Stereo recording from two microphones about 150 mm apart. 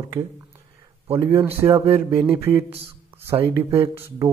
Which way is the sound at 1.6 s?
40° right (ahead or behind).